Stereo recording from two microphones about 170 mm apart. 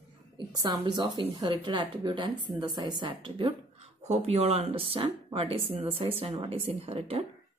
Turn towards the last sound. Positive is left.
turn(degrees=-35)  # may be behind; listen again after turning